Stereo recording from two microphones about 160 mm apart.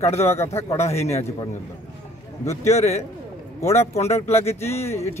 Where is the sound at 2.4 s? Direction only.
45° left (ahead or behind).